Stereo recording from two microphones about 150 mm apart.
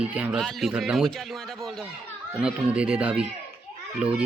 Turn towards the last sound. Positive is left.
turn(degrees=-10)  # may be behind; listen again after turning